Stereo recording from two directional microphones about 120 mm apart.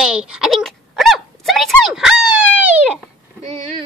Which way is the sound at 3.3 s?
65° right (ahead or behind).